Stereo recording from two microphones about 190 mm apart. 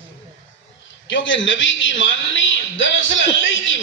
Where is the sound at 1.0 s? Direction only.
75° left (ahead or behind).